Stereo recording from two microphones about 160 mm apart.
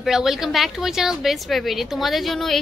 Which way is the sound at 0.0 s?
Centre (ahead or behind).